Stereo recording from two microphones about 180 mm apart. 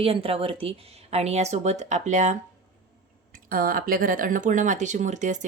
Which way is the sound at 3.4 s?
55° right (ahead or behind).